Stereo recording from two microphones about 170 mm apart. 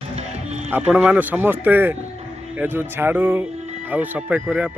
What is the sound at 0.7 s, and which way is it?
A man's voice, 10° right (ahead or behind).